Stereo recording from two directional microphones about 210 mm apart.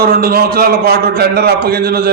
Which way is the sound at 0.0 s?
45° right (ahead or behind).